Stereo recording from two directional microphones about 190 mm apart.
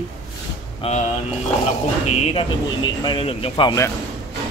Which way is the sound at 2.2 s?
25° left (ahead or behind).